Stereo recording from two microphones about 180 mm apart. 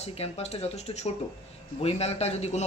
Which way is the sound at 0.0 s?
35° left (ahead or behind).